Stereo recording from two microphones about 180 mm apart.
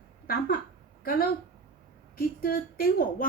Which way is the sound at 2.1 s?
55° left (ahead or behind).